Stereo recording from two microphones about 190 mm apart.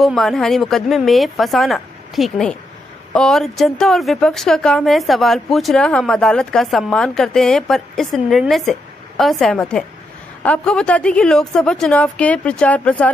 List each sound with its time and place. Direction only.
0.0 s speech: centre (ahead or behind)